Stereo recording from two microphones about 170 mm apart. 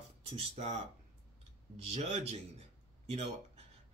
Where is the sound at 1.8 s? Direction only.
40° right (ahead or behind).